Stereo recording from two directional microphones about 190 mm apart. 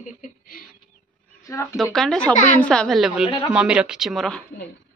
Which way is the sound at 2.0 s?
5° left (ahead or behind).